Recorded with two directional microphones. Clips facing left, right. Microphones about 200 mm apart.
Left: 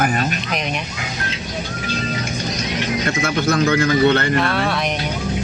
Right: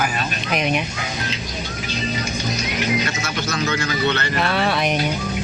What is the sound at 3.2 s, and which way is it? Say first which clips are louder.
A man's voice: left 7 dB; 55° left (ahead or behind).